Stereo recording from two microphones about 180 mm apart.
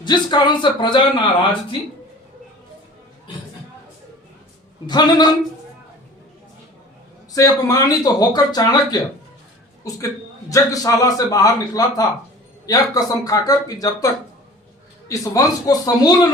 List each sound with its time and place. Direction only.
0.0 s speech: 25° left (ahead or behind)
4.9 s speech: 25° left (ahead or behind)
7.3 s speech: 20° left (ahead or behind)
10.5 s speech: 20° left (ahead or behind)